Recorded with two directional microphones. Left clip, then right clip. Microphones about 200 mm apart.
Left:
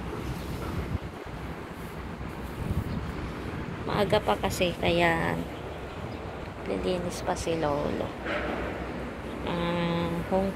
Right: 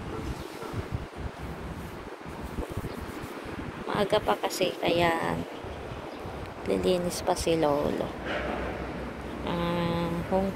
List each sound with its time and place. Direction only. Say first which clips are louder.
3.9 s speech: even; 5° right (ahead or behind)
6.7 s speech: right 4 dB; 35° right (ahead or behind)
9.5 s vehicle: even; 10° right (ahead or behind)
10.3 s speech: even; 5° right (ahead or behind)